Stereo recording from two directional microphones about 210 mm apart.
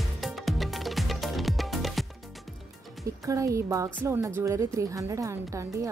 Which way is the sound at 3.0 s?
15° right (ahead or behind).